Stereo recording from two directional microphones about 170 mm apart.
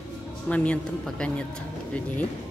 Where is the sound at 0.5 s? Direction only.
5° left (ahead or behind).